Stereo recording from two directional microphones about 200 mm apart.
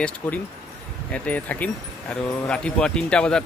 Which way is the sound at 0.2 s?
5° left (ahead or behind).